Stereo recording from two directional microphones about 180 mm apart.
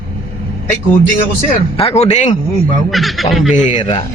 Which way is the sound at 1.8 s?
35° left (ahead or behind).